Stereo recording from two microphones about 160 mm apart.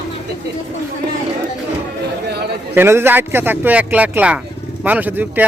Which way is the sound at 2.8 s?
15° right (ahead or behind).